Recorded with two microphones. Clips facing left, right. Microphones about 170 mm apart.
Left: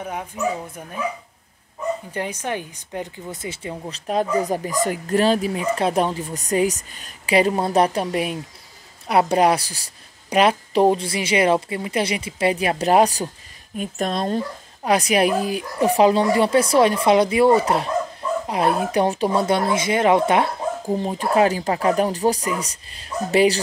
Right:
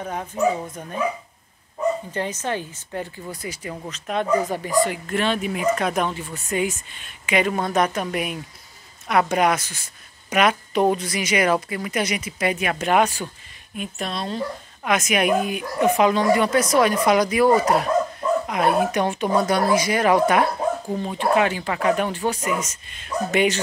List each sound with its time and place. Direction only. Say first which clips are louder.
0.0 s speech: right 3 dB; 10° left (ahead or behind)
2.1 s speech: even; 10° left (ahead or behind); by 14.4 s 45° left (ahead or behind)
14.8 s speech: left 3 dB; 35° left (ahead or behind)
20.8 s speech: left 1 dB; 35° left (ahead or behind)